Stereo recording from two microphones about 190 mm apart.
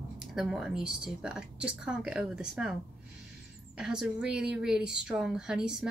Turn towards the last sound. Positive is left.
turn(degrees=-5)  # may be behind; listen again after turning